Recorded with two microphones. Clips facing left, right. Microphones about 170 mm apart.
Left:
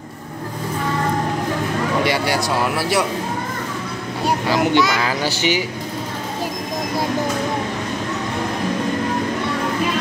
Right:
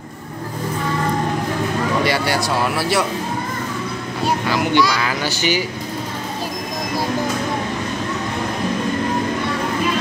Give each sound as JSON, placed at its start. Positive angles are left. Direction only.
{"t": 2.0, "sound": "speech", "side_deg": 15}
{"t": 4.5, "sound": "a child's voice", "side_deg": 25}